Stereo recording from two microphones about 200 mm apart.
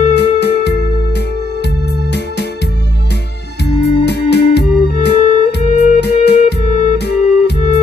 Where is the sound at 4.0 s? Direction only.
55° left (ahead or behind).